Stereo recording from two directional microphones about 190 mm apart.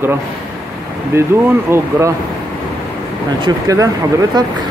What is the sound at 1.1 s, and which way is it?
A man's voice, 15° right (ahead or behind).